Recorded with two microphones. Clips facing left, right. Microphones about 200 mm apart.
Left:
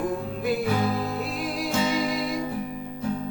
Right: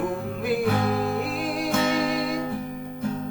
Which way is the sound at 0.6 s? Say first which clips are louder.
Right 2 dB; 55° right (ahead or behind).